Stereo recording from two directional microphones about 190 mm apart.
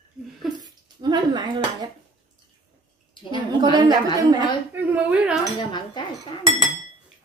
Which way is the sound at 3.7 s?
25° right (ahead or behind).